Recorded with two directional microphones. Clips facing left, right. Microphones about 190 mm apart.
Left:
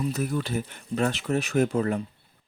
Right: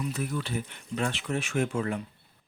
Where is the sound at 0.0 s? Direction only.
40° left (ahead or behind).